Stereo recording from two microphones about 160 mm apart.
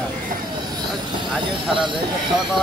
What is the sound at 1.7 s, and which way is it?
Speech, 30° right (ahead or behind).